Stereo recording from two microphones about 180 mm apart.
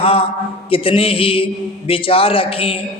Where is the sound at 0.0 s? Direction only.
30° left (ahead or behind).